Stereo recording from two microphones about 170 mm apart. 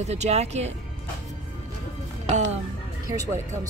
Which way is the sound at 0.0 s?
40° right (ahead or behind).